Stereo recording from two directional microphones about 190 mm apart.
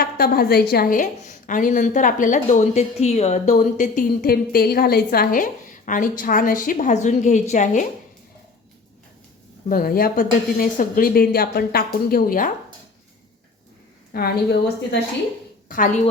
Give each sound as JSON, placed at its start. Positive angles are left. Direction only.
{"t": 0.0, "sound": "a woman's voice", "side_deg": 50}
{"t": 9.6, "sound": "a woman's voice", "side_deg": 50}
{"t": 14.1, "sound": "a woman's voice", "side_deg": 55}
{"t": 15.7, "sound": "a woman's voice", "side_deg": 45}